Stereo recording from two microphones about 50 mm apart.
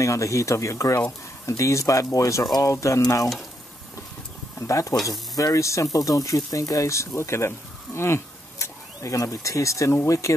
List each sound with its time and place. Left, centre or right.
0.0 s speech: left
4.6 s speech: left